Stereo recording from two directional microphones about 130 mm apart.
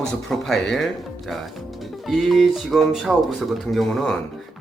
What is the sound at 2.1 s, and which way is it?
Speech, centre (ahead or behind).